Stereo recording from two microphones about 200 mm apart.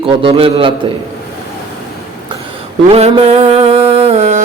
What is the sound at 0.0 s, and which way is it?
Speech, 25° right (ahead or behind).